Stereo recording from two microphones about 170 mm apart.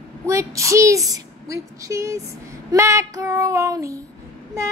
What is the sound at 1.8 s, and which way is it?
Female singing, 15° right (ahead or behind).